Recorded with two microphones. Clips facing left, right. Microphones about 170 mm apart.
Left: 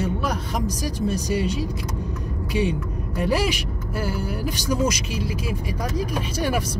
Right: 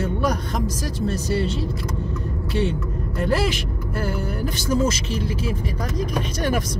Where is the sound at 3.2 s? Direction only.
10° left (ahead or behind).